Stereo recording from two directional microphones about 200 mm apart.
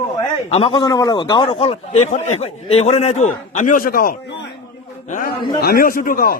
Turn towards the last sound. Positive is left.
turn(degrees=45)  # may be behind; listen again after turning